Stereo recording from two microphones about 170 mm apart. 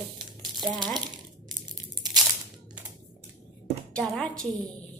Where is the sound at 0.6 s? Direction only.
25° right (ahead or behind).